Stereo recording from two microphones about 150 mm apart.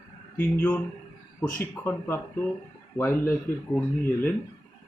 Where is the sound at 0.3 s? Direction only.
10° left (ahead or behind).